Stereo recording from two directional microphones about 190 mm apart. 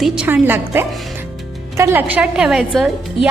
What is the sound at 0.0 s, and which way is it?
A woman's voice, 5° right (ahead or behind).